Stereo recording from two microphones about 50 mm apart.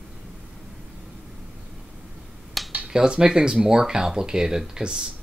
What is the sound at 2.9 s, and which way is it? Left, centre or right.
Speech, centre.